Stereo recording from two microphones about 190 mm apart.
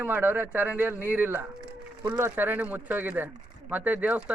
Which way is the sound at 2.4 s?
10° right (ahead or behind).